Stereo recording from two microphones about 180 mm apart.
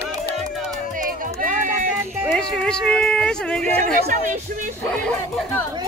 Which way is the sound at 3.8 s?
45° right (ahead or behind).